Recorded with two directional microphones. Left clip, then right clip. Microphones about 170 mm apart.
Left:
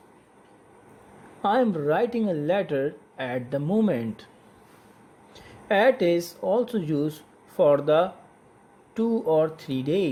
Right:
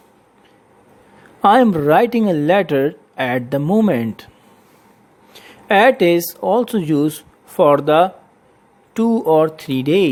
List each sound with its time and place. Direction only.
1.4 s speech: 40° right (ahead or behind)
5.3 s speech: 40° right (ahead or behind)